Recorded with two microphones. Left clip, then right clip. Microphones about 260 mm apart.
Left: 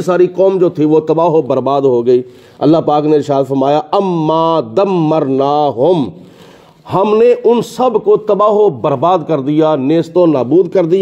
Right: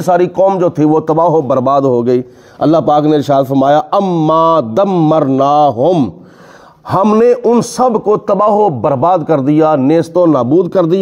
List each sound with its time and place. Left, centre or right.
0.0 s a man's voice: right